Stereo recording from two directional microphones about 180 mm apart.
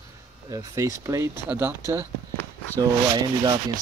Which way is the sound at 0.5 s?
20° right (ahead or behind).